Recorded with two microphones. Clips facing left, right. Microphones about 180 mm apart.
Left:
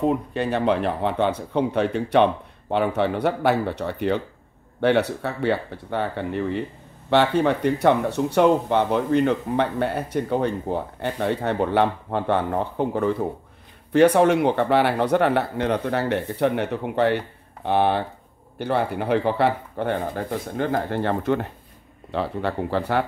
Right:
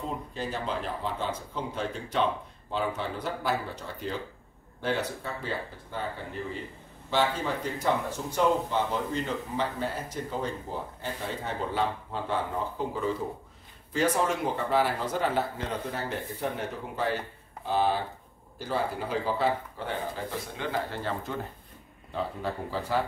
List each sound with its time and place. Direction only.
0.0 s speech: 70° left (ahead or behind)